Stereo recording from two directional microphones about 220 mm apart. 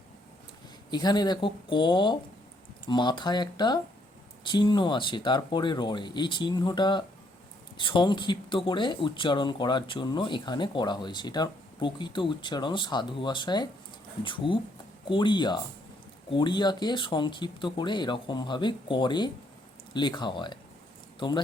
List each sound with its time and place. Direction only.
0.9 s speech: 20° left (ahead or behind)